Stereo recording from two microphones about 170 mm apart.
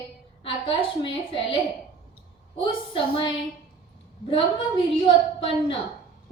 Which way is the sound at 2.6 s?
30° left (ahead or behind).